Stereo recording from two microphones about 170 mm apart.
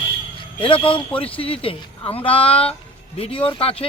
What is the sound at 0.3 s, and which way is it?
Speech, 30° left (ahead or behind).